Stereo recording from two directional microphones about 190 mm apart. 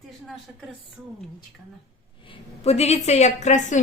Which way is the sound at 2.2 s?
30° left (ahead or behind).